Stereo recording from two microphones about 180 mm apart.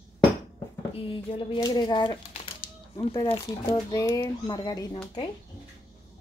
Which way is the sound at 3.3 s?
20° left (ahead or behind).